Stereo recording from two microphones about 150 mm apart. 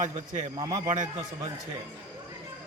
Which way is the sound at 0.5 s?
25° right (ahead or behind).